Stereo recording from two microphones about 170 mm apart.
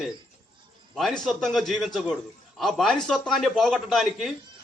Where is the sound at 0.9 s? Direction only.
Centre (ahead or behind).